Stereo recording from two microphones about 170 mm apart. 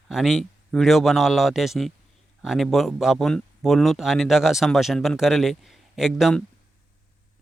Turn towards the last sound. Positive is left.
turn(degrees=0)  # may be behind; listen again after turning